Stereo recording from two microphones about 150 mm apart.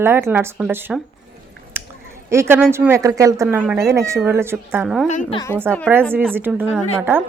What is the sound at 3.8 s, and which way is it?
A woman's voice, 20° right (ahead or behind).